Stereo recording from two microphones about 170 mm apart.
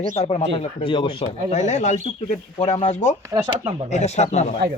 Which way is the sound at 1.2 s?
45° left (ahead or behind).